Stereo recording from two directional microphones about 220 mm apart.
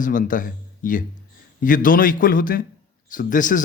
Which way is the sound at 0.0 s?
35° left (ahead or behind).